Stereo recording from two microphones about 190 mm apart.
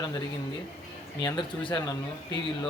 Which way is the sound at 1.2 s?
25° left (ahead or behind).